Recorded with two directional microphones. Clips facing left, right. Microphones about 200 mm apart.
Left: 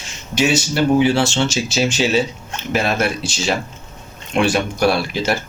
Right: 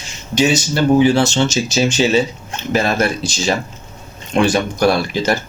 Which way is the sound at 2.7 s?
5° left (ahead or behind).